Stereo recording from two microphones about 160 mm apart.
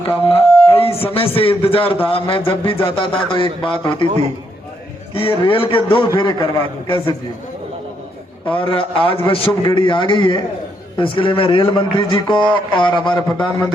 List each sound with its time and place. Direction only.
0.1 s a man's voice: 35° left (ahead or behind)
4.0 s a man's voice: 40° right (ahead or behind)
5.1 s a man's voice: 35° left (ahead or behind)
8.4 s a man's voice: 35° left (ahead or behind)